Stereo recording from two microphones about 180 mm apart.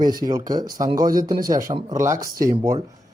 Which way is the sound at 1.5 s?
20° right (ahead or behind).